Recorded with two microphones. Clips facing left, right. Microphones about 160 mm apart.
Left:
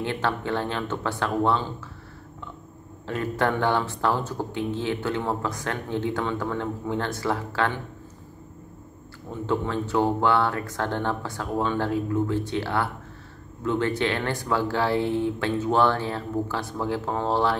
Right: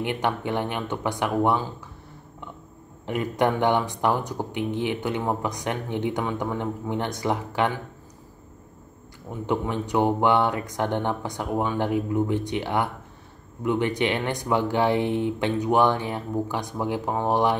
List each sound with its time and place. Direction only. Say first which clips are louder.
0.0 s speech: right 1 dB; 15° right (ahead or behind)
3.1 s speech: right 2 dB; 15° right (ahead or behind)
9.3 s speech: even; 15° right (ahead or behind)